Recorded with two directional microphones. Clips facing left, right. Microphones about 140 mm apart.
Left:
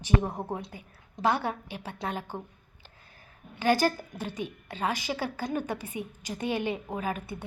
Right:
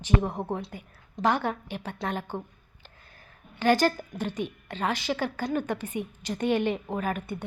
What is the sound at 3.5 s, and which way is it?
A woman's voice, 10° left (ahead or behind).